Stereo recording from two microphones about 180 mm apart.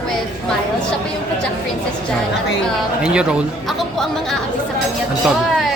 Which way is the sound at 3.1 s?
Centre (ahead or behind).